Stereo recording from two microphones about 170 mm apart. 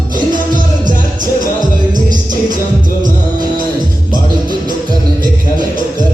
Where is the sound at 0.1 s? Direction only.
50° right (ahead or behind).